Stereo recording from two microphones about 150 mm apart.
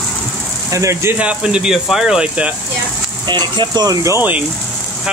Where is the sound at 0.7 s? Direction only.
20° right (ahead or behind).